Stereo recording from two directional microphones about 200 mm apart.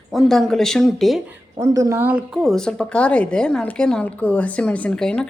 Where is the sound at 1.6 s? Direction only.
15° right (ahead or behind).